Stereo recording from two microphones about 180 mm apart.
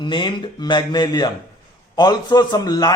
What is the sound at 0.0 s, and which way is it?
A man's voice, 25° left (ahead or behind).